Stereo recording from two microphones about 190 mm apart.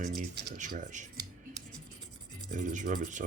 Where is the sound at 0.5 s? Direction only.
40° right (ahead or behind).